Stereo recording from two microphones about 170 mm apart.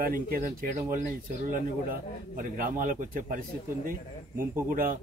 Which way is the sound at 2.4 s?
55° right (ahead or behind).